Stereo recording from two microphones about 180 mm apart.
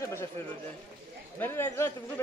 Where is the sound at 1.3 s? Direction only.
10° left (ahead or behind).